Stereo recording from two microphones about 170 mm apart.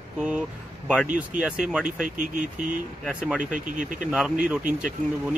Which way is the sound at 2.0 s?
50° right (ahead or behind).